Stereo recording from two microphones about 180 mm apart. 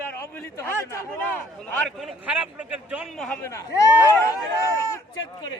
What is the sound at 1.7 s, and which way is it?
A man's voice, 5° left (ahead or behind).